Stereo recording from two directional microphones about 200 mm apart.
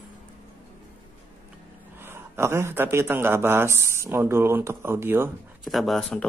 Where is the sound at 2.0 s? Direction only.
10° right (ahead or behind).